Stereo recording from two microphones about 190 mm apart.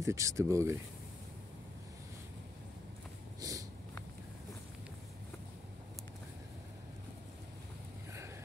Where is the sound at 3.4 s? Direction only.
20° right (ahead or behind).